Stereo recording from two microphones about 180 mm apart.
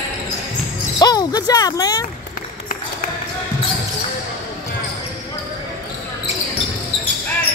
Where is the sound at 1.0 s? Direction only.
20° left (ahead or behind).